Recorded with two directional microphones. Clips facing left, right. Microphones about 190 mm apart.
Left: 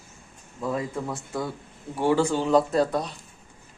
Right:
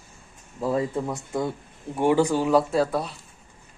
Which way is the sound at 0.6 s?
30° right (ahead or behind).